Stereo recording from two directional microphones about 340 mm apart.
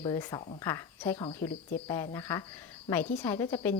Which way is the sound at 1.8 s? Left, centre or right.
Centre.